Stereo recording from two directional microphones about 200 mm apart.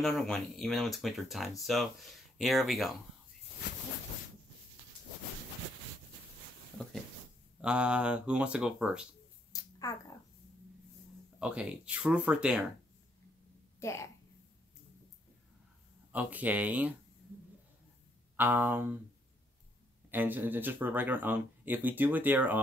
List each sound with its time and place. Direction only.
0.0 s speech: centre (ahead or behind)
7.6 s speech: 5° right (ahead or behind)
9.5 s a sound: 20° left (ahead or behind)
11.3 s speech: 5° right (ahead or behind)
13.7 s a woman's voice: 15° left (ahead or behind)
16.1 s speech: 10° right (ahead or behind)
18.3 s speech: 10° right (ahead or behind)
20.1 s speech: 10° right (ahead or behind)